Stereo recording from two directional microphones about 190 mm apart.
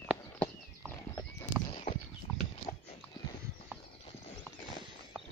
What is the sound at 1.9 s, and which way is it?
Clip-clop, 45° left (ahead or behind).